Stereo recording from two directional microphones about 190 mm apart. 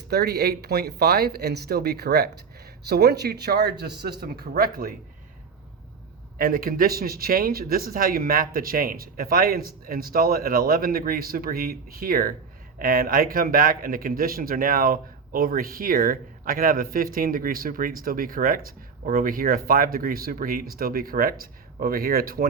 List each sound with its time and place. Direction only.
0.1 s a man's voice: 60° right (ahead or behind)
6.4 s a man's voice: 50° right (ahead or behind)